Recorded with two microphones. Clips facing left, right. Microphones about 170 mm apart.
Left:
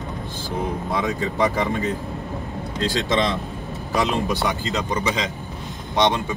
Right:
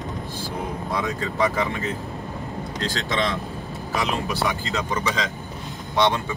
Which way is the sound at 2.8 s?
20° left (ahead or behind).